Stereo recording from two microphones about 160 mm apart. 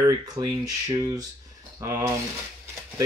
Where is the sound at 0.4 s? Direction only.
25° right (ahead or behind).